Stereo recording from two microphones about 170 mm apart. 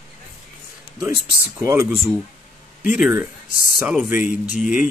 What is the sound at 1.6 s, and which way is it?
Speech, 15° right (ahead or behind).